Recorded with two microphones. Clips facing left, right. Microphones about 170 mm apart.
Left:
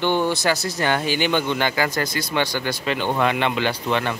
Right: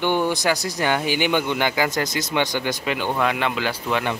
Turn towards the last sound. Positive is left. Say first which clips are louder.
# left 1 dB
turn(degrees=-10)  # may be behind; listen again after turning